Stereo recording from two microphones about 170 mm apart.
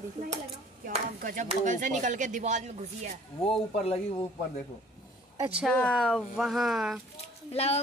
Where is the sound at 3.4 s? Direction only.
35° left (ahead or behind).